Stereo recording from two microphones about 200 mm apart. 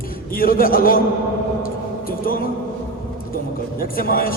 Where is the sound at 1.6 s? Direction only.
45° left (ahead or behind).